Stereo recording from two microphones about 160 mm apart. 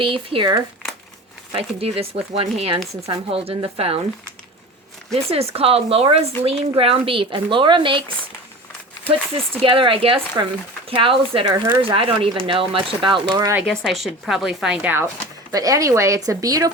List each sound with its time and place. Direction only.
0.0 s speech: 35° right (ahead or behind)
5.1 s speech: 40° right (ahead or behind)
9.6 s speech: 35° right (ahead or behind)
11.5 s speech: 20° right (ahead or behind)
11.8 s speech: 35° right (ahead or behind)
13.7 s a woman's voice: centre (ahead or behind); by 16.7 s 20° right (ahead or behind)